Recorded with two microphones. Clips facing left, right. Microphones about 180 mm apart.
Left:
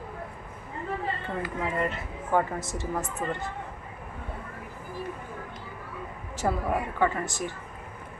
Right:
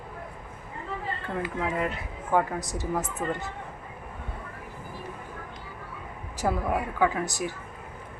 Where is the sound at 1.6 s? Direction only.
5° right (ahead or behind).